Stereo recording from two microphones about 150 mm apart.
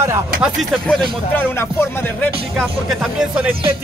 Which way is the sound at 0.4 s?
Centre (ahead or behind).